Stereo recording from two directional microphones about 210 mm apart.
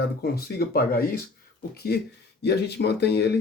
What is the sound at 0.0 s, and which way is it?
Speech, 50° left (ahead or behind).